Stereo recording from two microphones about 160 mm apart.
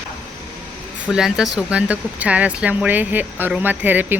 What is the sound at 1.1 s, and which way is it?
Speech, 5° right (ahead or behind).